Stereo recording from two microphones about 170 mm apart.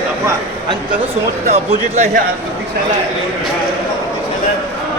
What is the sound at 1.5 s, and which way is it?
Speech, 45° right (ahead or behind).